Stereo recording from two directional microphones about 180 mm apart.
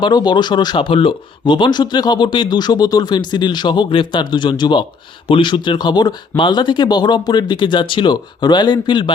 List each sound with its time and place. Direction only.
0.0 s speech: 25° left (ahead or behind)